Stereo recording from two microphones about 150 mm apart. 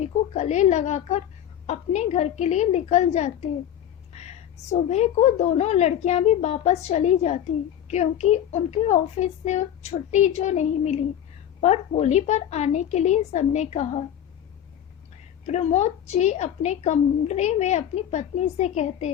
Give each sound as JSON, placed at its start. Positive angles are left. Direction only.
{"t": 0.0, "sound": "a woman's voice", "side_deg": 50}
{"t": 15.4, "sound": "a woman's voice", "side_deg": 50}